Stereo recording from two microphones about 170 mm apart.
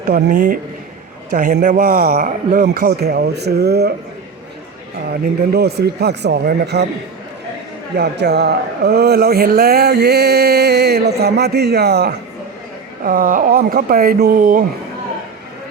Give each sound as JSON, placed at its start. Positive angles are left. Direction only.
{"t": 0.0, "sound": "a man's voice", "side_deg": -60}
{"t": 5.5, "sound": "speech", "side_deg": -70}
{"t": 7.9, "sound": "speech", "side_deg": -75}
{"t": 13.0, "sound": "a man's voice", "side_deg": -55}